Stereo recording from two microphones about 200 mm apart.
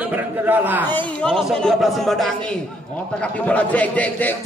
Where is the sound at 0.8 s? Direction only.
10° left (ahead or behind).